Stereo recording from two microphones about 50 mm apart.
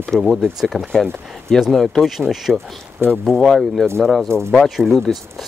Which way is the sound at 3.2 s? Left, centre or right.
Centre.